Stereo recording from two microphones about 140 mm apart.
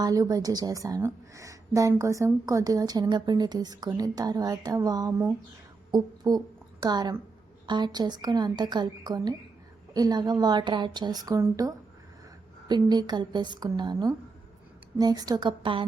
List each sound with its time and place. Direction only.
0.0 s a woman's voice: 25° right (ahead or behind)